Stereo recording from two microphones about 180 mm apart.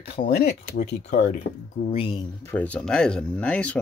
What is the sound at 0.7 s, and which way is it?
Speech, 70° left (ahead or behind).